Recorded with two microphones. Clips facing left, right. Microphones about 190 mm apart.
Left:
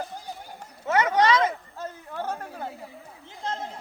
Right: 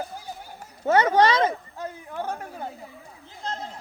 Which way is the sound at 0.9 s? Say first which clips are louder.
Right 3 dB; 30° right (ahead or behind).